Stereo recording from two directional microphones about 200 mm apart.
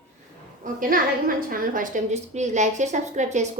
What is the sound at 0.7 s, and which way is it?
A woman's voice, 45° right (ahead or behind).